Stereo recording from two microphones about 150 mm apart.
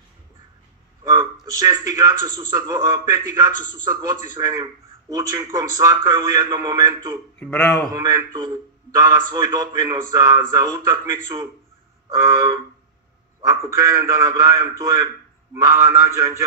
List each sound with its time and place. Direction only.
1.0 s a man's voice: 30° right (ahead or behind)
7.3 s speech: 5° left (ahead or behind)
7.9 s a man's voice: 25° right (ahead or behind)